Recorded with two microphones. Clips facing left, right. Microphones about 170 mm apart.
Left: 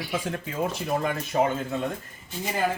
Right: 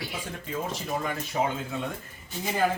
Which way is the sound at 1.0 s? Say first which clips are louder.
Left 4 dB; 55° left (ahead or behind).